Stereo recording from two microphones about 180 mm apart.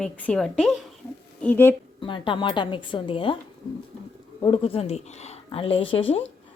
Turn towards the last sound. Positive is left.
turn(degrees=30)  # may be behind; listen again after turning